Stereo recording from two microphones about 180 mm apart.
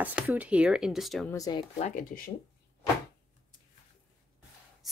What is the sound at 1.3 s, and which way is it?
Speech, 20° left (ahead or behind).